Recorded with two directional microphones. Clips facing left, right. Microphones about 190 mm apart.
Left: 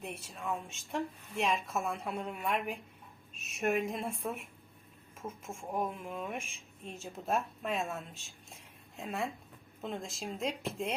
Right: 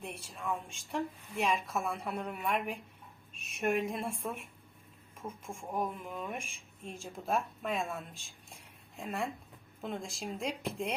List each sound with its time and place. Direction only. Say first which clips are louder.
0.0 s a woman's voice: even; centre (ahead or behind)